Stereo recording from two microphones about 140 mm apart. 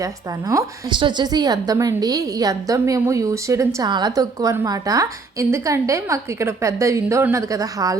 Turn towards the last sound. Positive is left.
turn(degrees=-25)  # may be behind; listen again after turning